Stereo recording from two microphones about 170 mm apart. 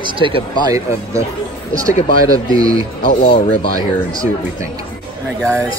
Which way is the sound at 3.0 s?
55° left (ahead or behind).